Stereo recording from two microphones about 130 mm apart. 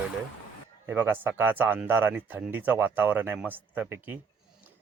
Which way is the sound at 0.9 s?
15° right (ahead or behind).